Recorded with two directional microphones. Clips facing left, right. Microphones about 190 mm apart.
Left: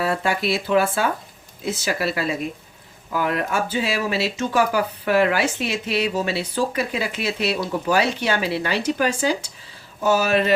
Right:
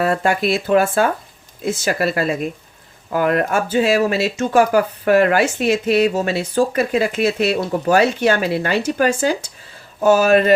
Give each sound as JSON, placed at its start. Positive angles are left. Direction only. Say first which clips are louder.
{"t": 0.0, "sound": "speech", "louder": "right 5 dB", "side_deg": -50}